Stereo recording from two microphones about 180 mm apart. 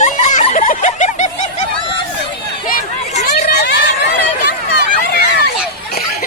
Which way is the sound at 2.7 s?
60° left (ahead or behind).